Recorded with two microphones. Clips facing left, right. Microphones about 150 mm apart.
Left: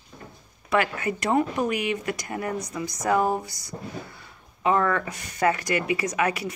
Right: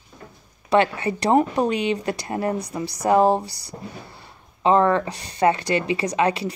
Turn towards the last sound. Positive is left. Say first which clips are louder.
# right 4 dB
turn(degrees=-30)  # may be behind; listen again after turning